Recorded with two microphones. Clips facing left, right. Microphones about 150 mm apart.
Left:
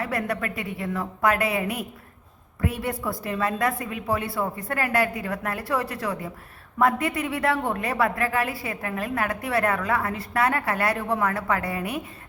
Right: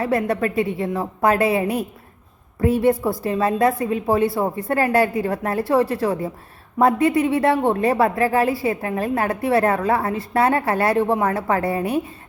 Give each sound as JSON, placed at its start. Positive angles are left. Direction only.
{"t": 0.0, "sound": "a woman's voice", "side_deg": -25}